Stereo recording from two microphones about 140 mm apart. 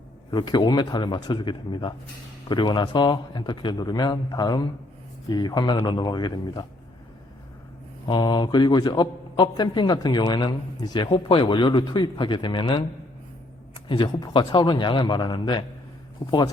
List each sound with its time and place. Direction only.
0.3 s a man's voice: 30° left (ahead or behind)
8.0 s a man's voice: 30° left (ahead or behind)
13.8 s a man's voice: 35° left (ahead or behind)